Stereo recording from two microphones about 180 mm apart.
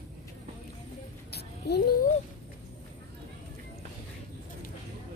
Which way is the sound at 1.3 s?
65° left (ahead or behind).